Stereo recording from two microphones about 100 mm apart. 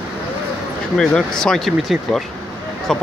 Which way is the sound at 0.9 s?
5° left (ahead or behind).